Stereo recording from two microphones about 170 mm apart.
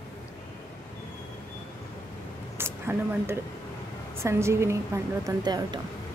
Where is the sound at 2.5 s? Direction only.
15° right (ahead or behind).